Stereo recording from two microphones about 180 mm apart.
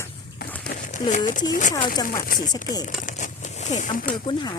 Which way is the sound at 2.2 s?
50° left (ahead or behind).